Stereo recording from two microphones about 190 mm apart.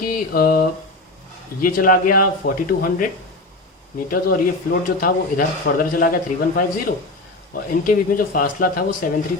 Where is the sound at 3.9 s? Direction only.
50° left (ahead or behind).